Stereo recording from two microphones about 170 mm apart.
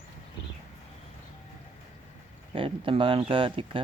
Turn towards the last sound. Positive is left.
turn(degrees=-30)  # may be behind; listen again after turning